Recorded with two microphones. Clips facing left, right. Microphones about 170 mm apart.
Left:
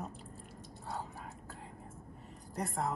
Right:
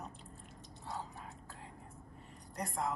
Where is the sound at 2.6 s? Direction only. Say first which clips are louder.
Left 2 dB; centre (ahead or behind).